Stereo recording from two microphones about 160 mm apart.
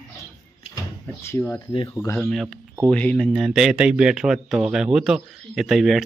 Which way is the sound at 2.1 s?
Centre (ahead or behind).